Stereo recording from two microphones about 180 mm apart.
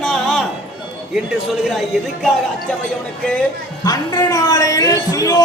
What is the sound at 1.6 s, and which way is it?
Speech, centre (ahead or behind).